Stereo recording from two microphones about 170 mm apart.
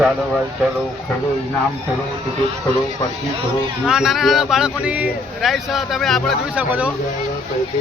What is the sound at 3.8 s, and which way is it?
Speech, 5° right (ahead or behind).